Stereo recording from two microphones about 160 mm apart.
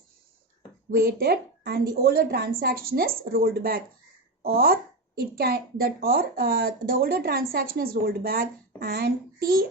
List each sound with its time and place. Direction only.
0.9 s a woman's voice: 70° right (ahead or behind)